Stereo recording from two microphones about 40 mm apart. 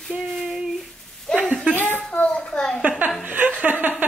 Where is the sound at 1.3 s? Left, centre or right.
Left.